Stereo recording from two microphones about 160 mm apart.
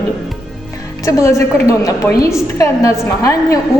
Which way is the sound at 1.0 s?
20° left (ahead or behind).